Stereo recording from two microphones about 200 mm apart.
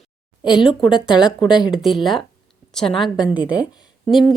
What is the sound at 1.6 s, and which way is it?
A woman's voice, centre (ahead or behind).